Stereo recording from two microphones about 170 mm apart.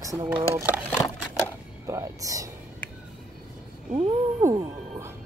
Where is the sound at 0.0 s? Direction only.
20° right (ahead or behind).